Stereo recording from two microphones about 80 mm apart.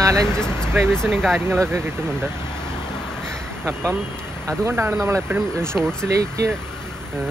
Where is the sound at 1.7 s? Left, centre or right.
Right.